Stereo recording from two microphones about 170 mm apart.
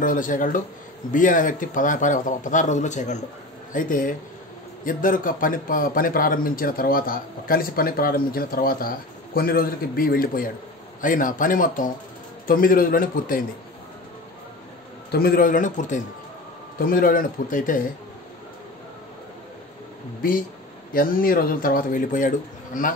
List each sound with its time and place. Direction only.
0.0 s a man's voice: 50° left (ahead or behind)
15.0 s a man's voice: 65° left (ahead or behind)
20.2 s a man's voice: 55° left (ahead or behind)